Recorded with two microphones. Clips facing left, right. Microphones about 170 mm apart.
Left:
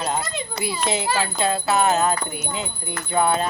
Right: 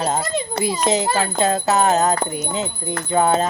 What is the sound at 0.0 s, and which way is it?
A child's voice, 40° right (ahead or behind).